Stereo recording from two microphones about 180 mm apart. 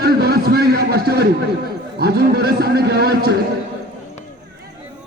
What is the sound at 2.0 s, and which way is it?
Speech, 60° right (ahead or behind).